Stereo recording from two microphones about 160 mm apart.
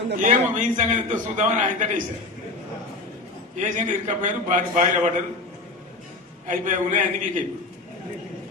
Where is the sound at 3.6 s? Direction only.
50° right (ahead or behind).